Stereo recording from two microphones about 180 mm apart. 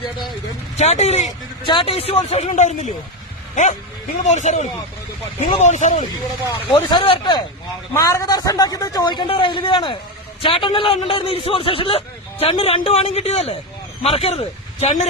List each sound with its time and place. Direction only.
0.8 s a man's voice: 35° left (ahead or behind)
6.7 s a man's voice: 25° left (ahead or behind)